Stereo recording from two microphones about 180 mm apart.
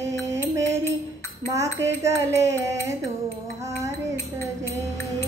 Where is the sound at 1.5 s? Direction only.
15° right (ahead or behind).